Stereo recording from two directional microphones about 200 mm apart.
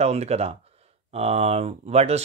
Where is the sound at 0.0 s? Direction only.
35° right (ahead or behind).